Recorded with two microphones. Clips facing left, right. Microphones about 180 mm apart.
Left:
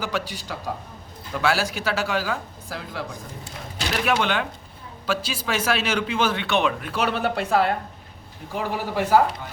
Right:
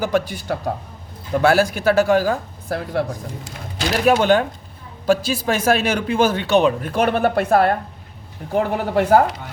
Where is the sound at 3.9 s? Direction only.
40° right (ahead or behind).